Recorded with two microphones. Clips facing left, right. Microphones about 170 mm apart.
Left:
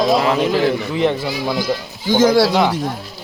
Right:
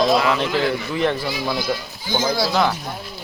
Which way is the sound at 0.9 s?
15° left (ahead or behind).